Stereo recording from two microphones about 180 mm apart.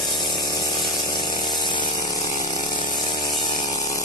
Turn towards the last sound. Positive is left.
turn(degrees=20)  # may be behind; listen again after turning